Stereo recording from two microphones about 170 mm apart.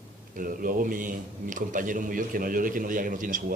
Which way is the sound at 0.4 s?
55° right (ahead or behind).